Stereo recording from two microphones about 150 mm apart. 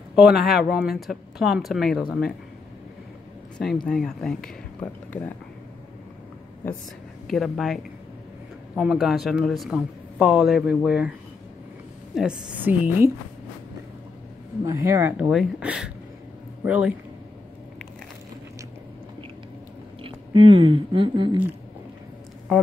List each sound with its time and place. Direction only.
0.1 s a man's voice: 5° right (ahead or behind)
3.5 s a man's voice: 5° left (ahead or behind)
6.6 s a woman's voice: 10° left (ahead or behind); by 11.1 s 5° right (ahead or behind)
12.2 s speech: 10° right (ahead or behind)
14.6 s speech: 20° right (ahead or behind)
20.0 s speech: 35° right (ahead or behind)